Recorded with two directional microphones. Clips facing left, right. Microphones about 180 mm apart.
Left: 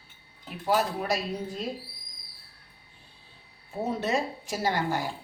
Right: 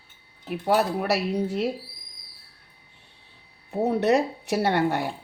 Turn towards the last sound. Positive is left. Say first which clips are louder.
# right 5 dB
turn(degrees=-65)  # may be behind; listen again after turning